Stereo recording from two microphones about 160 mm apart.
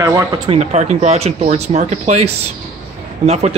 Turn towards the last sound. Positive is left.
turn(degrees=-45)  # may be behind; listen again after turning